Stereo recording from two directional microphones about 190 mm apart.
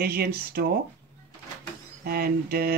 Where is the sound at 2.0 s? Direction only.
55° right (ahead or behind).